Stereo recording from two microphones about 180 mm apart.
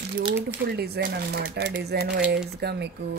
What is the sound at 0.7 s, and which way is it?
Speech, 65° right (ahead or behind).